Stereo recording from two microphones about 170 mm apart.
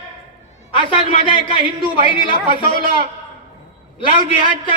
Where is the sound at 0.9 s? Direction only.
30° left (ahead or behind).